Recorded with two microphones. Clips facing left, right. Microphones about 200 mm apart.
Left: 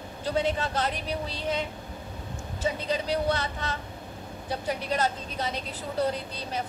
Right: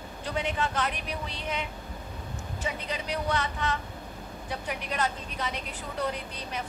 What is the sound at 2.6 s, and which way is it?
Speech, 35° left (ahead or behind).